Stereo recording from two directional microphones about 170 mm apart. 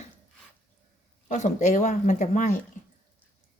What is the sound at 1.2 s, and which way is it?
Speech, 45° left (ahead or behind).